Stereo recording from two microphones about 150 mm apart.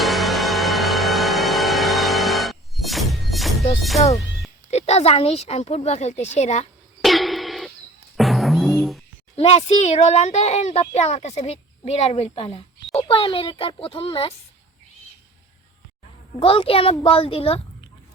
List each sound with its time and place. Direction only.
0.0 s music: centre (ahead or behind)
4.7 s speech: 45° left (ahead or behind)
7.0 s a sound: centre (ahead or behind)
8.1 s music: centre (ahead or behind)
9.3 s a child's voice: 45° left (ahead or behind)
16.4 s a child's voice: 35° left (ahead or behind)